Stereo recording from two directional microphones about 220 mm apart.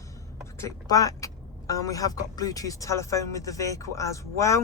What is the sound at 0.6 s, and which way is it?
Speech, 15° left (ahead or behind).